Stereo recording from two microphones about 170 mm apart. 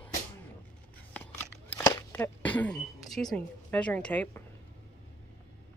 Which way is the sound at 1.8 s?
20° left (ahead or behind).